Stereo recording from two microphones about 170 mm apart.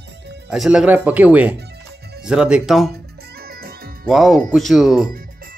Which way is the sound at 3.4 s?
65° right (ahead or behind).